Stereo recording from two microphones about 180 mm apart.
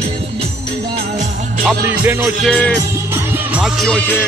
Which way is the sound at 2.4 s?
5° left (ahead or behind).